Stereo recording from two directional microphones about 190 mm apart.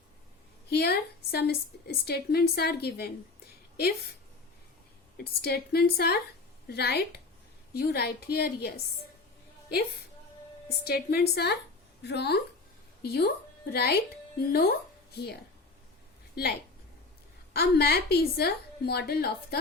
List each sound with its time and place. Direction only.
0.7 s a woman's voice: 55° left (ahead or behind)
5.1 s a woman's voice: 55° left (ahead or behind)
10.7 s a woman's voice: 55° left (ahead or behind)
15.1 s a woman's voice: 60° left (ahead or behind)